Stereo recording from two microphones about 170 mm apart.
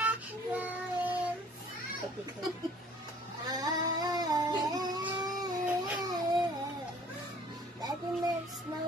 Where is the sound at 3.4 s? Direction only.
25° right (ahead or behind).